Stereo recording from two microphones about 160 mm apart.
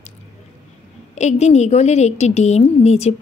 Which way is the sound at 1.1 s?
45° left (ahead or behind).